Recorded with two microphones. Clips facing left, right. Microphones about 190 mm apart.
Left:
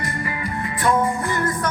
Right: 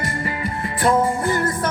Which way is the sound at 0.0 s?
30° right (ahead or behind).